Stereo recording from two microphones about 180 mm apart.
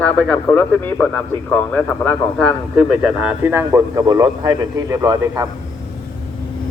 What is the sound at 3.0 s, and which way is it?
Speech, 10° right (ahead or behind).